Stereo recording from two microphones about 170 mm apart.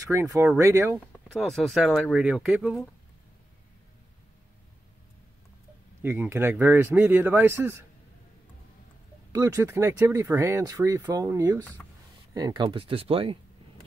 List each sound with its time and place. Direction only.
0.0 s speech: 15° right (ahead or behind)
1.3 s speech: centre (ahead or behind)
6.0 s speech: 15° right (ahead or behind)
9.3 s speech: 15° right (ahead or behind); by 13.4 s 35° right (ahead or behind)